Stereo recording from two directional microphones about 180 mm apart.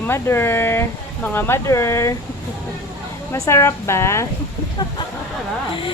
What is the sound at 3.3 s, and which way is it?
Speech, 15° left (ahead or behind).